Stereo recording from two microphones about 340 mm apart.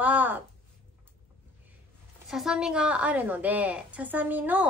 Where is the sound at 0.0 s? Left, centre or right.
Centre.